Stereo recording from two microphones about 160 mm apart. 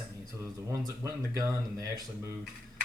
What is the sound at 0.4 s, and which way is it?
Speech, 15° right (ahead or behind).